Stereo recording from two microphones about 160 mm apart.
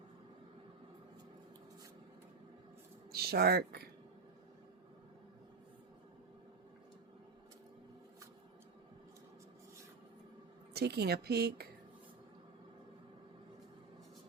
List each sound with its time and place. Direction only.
3.1 s speech: 75° right (ahead or behind)
10.8 s a woman's voice: 90° right